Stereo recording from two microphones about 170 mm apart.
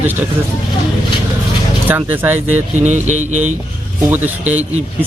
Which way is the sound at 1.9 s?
10° right (ahead or behind).